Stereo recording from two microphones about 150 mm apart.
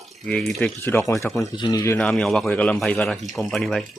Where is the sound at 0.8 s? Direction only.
15° left (ahead or behind).